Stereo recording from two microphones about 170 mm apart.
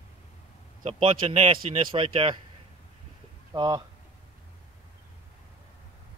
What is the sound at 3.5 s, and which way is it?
Speech, 25° right (ahead or behind).